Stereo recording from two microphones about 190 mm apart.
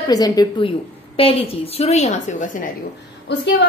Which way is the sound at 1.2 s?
30° left (ahead or behind).